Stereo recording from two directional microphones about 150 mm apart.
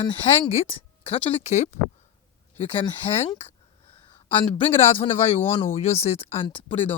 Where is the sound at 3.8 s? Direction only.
35° left (ahead or behind).